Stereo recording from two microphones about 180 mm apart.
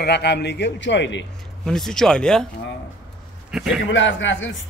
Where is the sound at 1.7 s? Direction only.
Centre (ahead or behind).